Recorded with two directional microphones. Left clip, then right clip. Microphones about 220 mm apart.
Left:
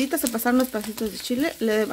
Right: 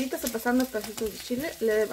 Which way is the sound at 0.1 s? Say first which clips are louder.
Left 5 dB; 45° left (ahead or behind).